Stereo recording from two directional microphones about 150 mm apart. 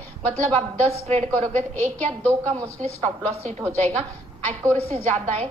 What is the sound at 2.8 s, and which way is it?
Speech, 50° right (ahead or behind).